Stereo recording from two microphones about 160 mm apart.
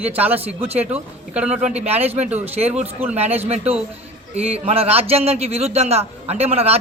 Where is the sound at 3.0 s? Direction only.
10° right (ahead or behind).